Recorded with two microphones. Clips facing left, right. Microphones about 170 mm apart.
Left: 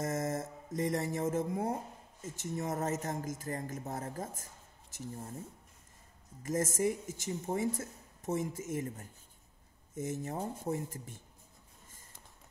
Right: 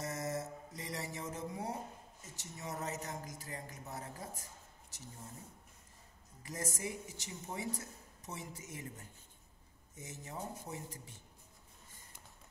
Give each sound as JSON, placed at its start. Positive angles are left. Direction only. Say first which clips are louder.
{"t": 0.0, "sound": "mantra", "louder": "left 5 dB", "side_deg": 50}
{"t": 2.2, "sound": "speech", "louder": "left 10 dB", "side_deg": 50}
{"t": 6.4, "sound": "speech", "louder": "left 10 dB", "side_deg": 45}